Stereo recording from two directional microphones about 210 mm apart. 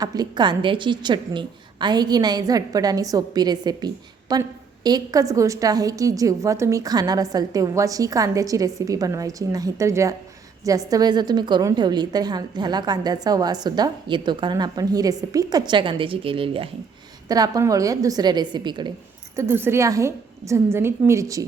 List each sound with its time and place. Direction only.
0.0 s a woman's voice: 20° right (ahead or behind)
19.4 s a woman's voice: 10° right (ahead or behind)